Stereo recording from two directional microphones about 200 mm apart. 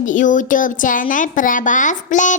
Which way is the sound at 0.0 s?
40° left (ahead or behind).